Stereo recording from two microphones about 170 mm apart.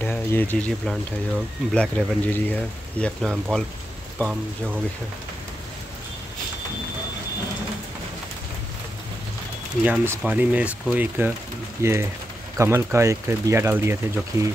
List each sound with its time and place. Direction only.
0.0 s speech: 10° left (ahead or behind)
9.8 s speech: 10° right (ahead or behind)